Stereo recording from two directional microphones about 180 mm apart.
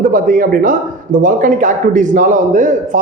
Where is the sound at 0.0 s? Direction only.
50° right (ahead or behind).